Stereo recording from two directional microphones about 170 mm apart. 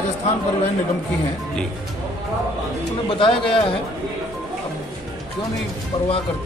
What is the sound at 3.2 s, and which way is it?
Speech, 30° left (ahead or behind).